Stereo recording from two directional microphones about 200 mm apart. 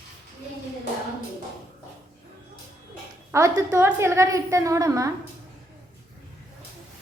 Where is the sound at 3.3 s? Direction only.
15° right (ahead or behind).